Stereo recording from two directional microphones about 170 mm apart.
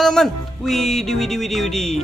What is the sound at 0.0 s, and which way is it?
Speech, centre (ahead or behind).